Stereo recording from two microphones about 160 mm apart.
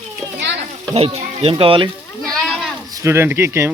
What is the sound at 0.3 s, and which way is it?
Children playing, 90° right.